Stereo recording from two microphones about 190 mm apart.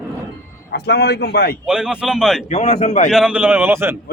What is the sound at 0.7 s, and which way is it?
Speech, 60° left (ahead or behind).